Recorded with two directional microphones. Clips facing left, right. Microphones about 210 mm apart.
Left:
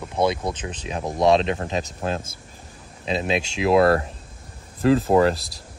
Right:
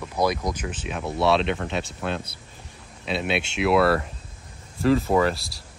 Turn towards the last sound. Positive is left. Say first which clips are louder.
# left 3 dB
turn(degrees=40)  # may be behind; listen again after turning